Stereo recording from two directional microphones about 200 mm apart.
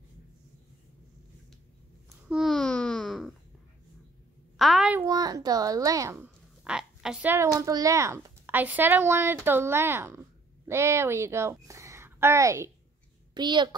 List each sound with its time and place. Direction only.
2.2 s babbling: centre (ahead or behind)
4.6 s a sound: centre (ahead or behind)
5.0 s a child's voice: 20° right (ahead or behind)